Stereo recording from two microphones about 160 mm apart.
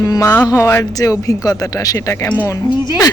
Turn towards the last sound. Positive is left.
turn(degrees=20)  # may be behind; listen again after turning